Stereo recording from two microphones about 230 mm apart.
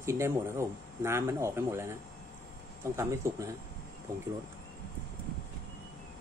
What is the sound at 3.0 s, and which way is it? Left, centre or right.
Speech, centre.